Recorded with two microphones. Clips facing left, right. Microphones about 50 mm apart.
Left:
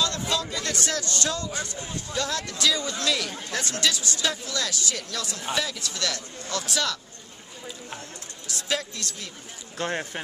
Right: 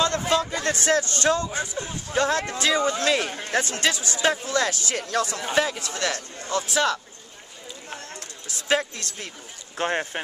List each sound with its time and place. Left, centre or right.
0.3 s speech: right
8.6 s speech: right